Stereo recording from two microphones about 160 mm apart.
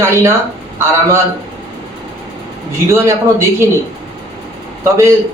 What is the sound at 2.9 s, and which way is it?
Speech, 15° right (ahead or behind).